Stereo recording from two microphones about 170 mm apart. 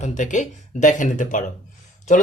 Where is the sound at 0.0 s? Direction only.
45° left (ahead or behind).